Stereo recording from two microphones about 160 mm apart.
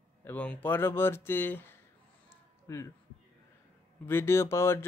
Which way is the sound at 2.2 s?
20° left (ahead or behind).